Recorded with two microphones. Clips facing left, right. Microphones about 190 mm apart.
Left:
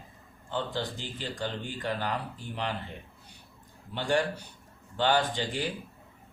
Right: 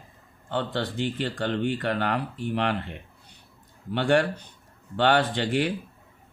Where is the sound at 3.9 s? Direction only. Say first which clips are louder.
Right 6 dB; 70° right (ahead or behind).